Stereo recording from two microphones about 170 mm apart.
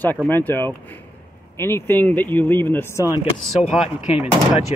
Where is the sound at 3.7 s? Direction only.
35° left (ahead or behind).